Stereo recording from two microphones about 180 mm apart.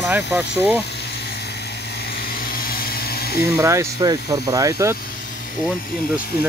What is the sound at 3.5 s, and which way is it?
Speech, 15° right (ahead or behind).